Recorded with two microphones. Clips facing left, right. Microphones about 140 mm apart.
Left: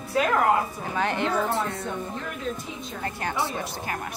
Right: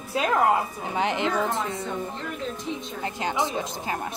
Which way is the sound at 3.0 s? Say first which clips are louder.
Right 2 dB; 20° right (ahead or behind).